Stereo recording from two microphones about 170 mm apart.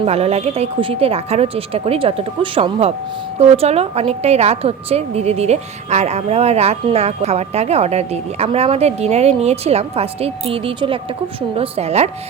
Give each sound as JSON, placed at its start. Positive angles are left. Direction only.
{"t": 0.0, "sound": "a woman's voice", "side_deg": -40}